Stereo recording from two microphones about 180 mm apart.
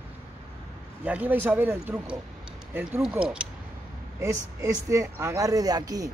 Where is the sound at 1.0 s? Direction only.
10° right (ahead or behind).